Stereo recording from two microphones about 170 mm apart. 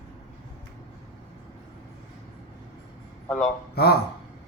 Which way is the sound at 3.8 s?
70° left (ahead or behind).